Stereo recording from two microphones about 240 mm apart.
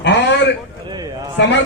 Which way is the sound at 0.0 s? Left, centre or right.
Left.